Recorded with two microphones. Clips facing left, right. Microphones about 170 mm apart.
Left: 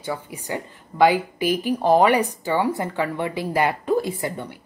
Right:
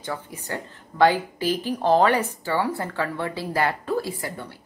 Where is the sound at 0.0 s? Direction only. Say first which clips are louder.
Left 3 dB; 10° left (ahead or behind).